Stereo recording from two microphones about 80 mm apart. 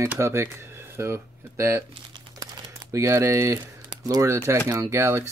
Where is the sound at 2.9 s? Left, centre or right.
Right.